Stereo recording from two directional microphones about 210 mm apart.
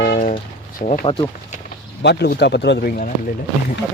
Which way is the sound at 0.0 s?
40° left (ahead or behind).